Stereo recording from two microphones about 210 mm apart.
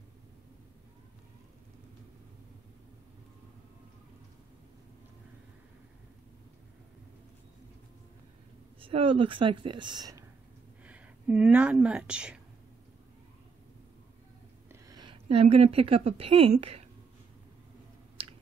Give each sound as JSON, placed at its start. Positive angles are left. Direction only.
{"t": 8.8, "sound": "a woman's voice", "side_deg": -25}
{"t": 10.8, "sound": "speech", "side_deg": -5}
{"t": 14.7, "sound": "a woman's voice", "side_deg": -20}
{"t": 18.2, "sound": "a sound", "side_deg": -25}